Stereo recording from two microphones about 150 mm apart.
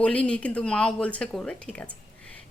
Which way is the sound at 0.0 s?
10° left (ahead or behind).